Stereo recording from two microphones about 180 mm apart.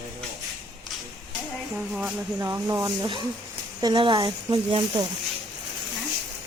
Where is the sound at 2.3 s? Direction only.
15° right (ahead or behind).